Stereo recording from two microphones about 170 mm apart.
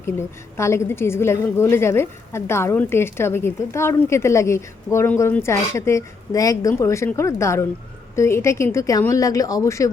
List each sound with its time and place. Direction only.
0.0 s a woman's voice: 15° left (ahead or behind)